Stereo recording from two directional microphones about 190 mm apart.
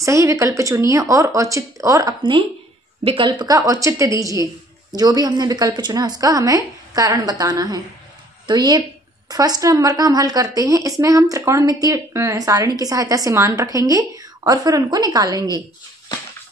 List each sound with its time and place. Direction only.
0.0 s a woman's voice: 15° right (ahead or behind)